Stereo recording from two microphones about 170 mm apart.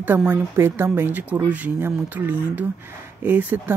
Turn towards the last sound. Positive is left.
turn(degrees=-10)  # may be behind; listen again after turning